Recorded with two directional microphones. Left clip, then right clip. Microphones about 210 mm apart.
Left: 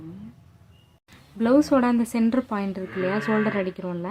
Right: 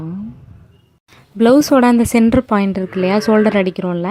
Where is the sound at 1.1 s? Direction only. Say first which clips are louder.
Right 10 dB; 35° right (ahead or behind).